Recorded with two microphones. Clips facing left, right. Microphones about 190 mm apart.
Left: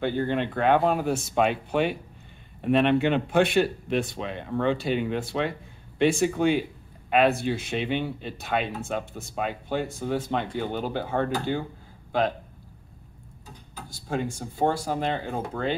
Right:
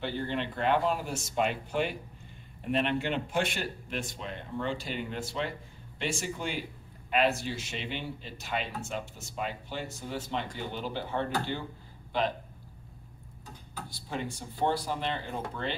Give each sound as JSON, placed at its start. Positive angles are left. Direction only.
{"t": 0.0, "sound": "speech", "side_deg": 50}
{"t": 13.8, "sound": "speech", "side_deg": 45}